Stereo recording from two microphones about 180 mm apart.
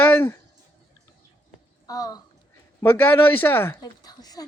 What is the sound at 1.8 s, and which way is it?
Speech, 20° left (ahead or behind).